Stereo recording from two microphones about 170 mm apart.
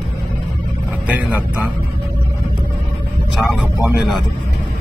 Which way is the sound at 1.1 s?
10° right (ahead or behind).